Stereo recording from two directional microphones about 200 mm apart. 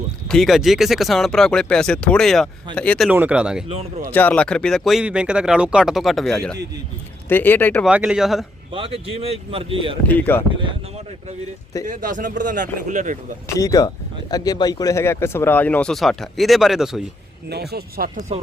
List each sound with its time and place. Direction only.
0.3 s speech: centre (ahead or behind)
3.1 s speech: 5° right (ahead or behind)
3.7 s speech: 35° right (ahead or behind)
4.1 s speech: 10° left (ahead or behind)
7.9 s speech: 5° right (ahead or behind)
8.7 s speech: 30° right (ahead or behind)
10.1 s speech: 10° left (ahead or behind)
10.6 s speech: 35° right (ahead or behind)
13.6 s speech: 15° left (ahead or behind); by 17.0 s centre (ahead or behind)
17.5 s speech: 55° right (ahead or behind)